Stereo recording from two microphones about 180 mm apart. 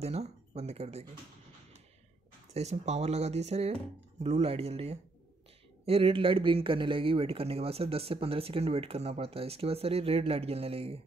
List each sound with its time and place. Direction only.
0.0 s speech: 35° right (ahead or behind)
2.5 s speech: 35° right (ahead or behind)